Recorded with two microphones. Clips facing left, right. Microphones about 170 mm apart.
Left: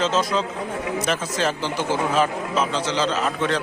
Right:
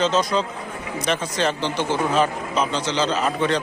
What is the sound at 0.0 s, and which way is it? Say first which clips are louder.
Speech: right 1 dB; 5° left (ahead or behind).